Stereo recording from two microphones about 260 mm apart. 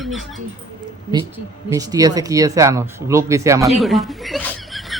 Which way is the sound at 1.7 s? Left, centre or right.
Centre.